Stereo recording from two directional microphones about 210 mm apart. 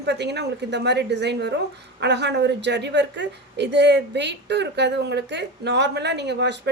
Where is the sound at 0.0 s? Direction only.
55° right (ahead or behind).